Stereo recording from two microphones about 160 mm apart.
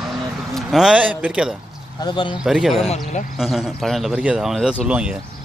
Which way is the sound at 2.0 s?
30° left (ahead or behind).